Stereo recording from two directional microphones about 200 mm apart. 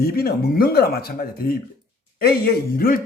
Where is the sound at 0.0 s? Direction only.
50° left (ahead or behind).